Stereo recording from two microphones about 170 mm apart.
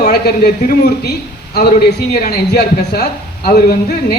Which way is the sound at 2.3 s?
70° left (ahead or behind).